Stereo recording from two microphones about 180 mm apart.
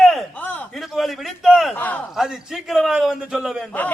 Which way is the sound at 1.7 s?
10° left (ahead or behind).